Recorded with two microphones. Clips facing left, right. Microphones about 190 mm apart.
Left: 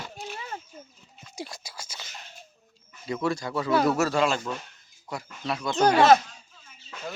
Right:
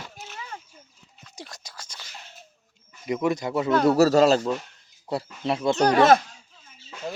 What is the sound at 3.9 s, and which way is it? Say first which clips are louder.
Speech: right 7 dB; 35° right (ahead or behind).